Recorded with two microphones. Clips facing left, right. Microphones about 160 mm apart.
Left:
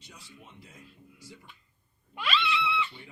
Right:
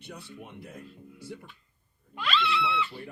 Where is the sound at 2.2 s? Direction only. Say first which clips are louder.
Right 2 dB; centre (ahead or behind).